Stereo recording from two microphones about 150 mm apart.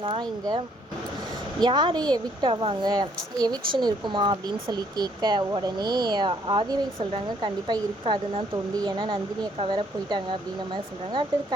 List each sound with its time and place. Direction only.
0.0 s speech: 30° right (ahead or behind)